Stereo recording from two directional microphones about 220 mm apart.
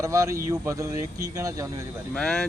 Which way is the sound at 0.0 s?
15° right (ahead or behind).